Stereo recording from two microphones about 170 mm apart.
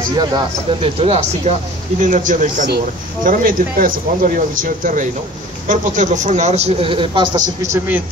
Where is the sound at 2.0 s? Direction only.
50° right (ahead or behind); by 7.4 s 30° right (ahead or behind).